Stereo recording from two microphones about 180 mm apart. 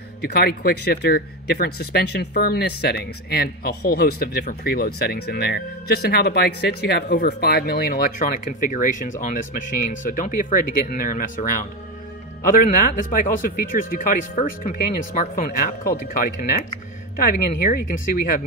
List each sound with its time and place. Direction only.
0.2 s speech: 60° left (ahead or behind)